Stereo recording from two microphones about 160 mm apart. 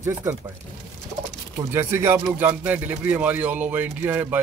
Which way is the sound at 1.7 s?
15° right (ahead or behind).